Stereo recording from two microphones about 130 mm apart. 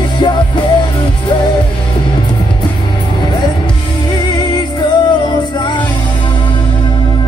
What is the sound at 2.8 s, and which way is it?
Music, 35° left (ahead or behind).